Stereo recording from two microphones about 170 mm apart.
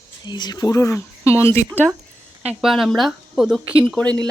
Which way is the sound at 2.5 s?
Centre (ahead or behind).